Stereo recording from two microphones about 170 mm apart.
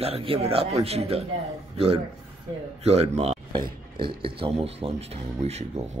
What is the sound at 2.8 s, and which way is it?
Speech, 40° right (ahead or behind).